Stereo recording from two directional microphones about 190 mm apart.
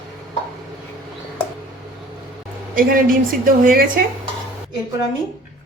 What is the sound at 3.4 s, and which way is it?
Speech, 50° right (ahead or behind).